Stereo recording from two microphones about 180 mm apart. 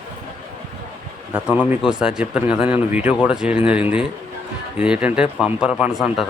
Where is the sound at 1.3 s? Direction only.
10° right (ahead or behind).